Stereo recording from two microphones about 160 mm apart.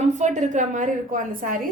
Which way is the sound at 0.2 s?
50° right (ahead or behind).